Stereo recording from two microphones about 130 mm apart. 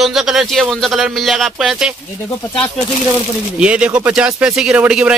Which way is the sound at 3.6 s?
10° right (ahead or behind).